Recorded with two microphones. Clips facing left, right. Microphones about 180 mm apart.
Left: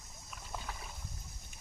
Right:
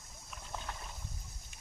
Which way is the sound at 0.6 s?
5° left (ahead or behind).